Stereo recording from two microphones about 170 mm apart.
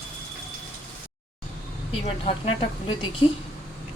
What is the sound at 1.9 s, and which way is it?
Speech, 35° left (ahead or behind).